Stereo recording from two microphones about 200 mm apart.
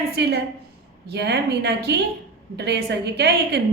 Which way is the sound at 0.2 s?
60° right (ahead or behind).